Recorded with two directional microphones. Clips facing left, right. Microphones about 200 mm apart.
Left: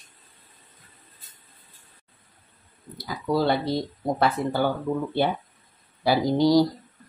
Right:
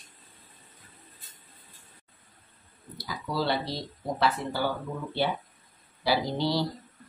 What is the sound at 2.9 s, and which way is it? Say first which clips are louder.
Speech: left 7 dB; 50° left (ahead or behind).